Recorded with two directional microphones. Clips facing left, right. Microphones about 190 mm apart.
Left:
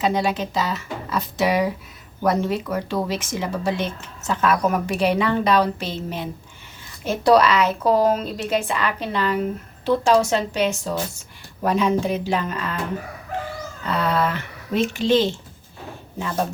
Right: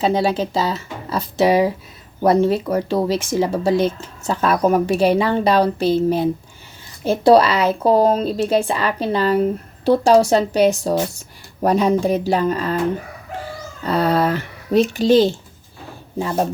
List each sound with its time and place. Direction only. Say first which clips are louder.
0.0 s speech: right 4 dB; 30° right (ahead or behind)
13.8 s speech: right 5 dB; 35° right (ahead or behind)